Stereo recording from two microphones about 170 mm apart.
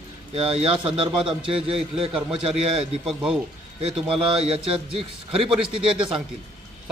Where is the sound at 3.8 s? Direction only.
30° right (ahead or behind).